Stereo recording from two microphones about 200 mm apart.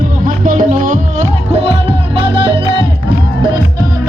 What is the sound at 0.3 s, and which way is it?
Music, 40° right (ahead or behind).